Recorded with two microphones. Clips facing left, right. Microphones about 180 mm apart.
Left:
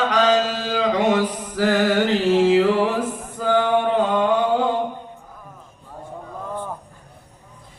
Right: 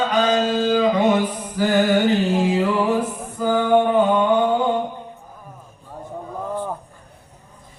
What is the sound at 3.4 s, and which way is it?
Mantra, 90° left.